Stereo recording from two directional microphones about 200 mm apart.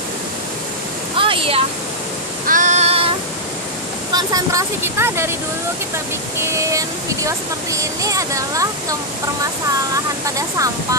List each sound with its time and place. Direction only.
1.1 s waterfall: 25° right (ahead or behind)
2.4 s female singing: 40° right (ahead or behind)
4.1 s speech: 20° right (ahead or behind)
6.4 s speech: 15° right (ahead or behind)
10.2 s speech: 15° right (ahead or behind)